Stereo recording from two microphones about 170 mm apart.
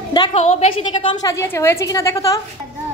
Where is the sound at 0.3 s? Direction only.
40° left (ahead or behind).